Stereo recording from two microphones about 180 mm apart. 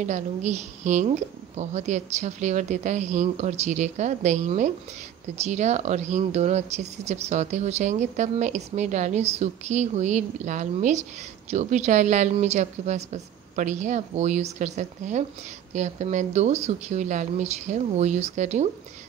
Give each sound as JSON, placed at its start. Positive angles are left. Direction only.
{"t": 0.0, "sound": "speech", "side_deg": -40}